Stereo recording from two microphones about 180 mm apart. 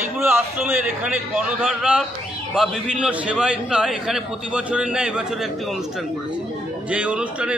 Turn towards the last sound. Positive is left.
turn(degrees=-5)  # may be behind; listen again after turning